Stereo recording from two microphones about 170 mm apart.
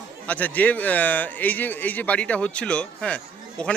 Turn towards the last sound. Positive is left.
turn(degrees=5)  # may be behind; listen again after turning